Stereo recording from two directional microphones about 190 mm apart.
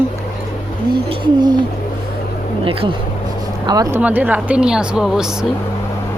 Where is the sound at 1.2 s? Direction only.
20° right (ahead or behind).